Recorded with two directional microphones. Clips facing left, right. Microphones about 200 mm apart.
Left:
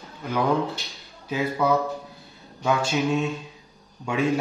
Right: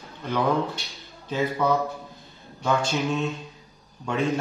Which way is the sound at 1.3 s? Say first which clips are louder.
Left 1 dB; 10° left (ahead or behind).